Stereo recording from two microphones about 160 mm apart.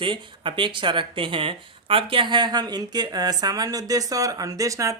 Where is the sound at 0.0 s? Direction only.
30° right (ahead or behind).